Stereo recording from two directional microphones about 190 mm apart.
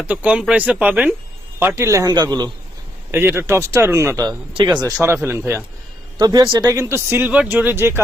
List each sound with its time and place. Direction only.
0.0 s speech: 5° right (ahead or behind)